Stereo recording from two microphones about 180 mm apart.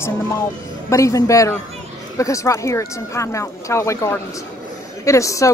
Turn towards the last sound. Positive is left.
turn(degrees=15)  # may be behind; listen again after turning